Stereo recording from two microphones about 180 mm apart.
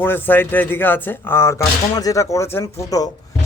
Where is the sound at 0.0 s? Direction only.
10° left (ahead or behind).